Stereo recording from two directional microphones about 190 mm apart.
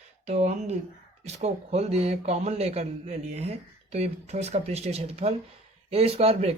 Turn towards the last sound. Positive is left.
turn(degrees=-35)  # may be behind; listen again after turning